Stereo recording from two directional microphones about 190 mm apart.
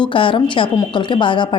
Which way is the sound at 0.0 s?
25° left (ahead or behind).